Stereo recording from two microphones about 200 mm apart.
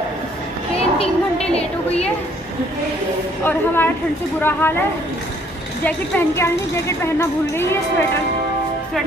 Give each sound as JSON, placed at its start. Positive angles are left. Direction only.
{"t": 0.7, "sound": "a child's voice", "side_deg": 30}
{"t": 3.4, "sound": "speech", "side_deg": 10}
{"t": 5.9, "sound": "speech", "side_deg": 10}